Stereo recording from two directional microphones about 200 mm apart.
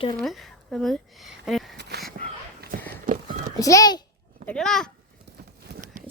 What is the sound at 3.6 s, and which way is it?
Speech, 15° left (ahead or behind).